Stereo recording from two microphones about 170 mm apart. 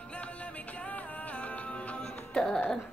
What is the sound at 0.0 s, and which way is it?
Music, 5° left (ahead or behind).